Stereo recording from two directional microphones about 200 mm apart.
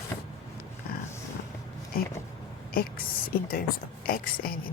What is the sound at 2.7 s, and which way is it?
Speech, 45° left (ahead or behind).